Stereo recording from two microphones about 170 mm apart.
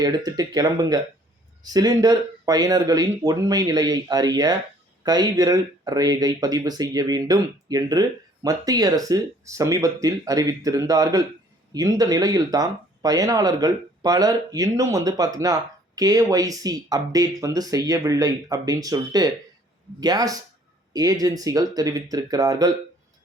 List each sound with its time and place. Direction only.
0.0 s speech: 20° right (ahead or behind)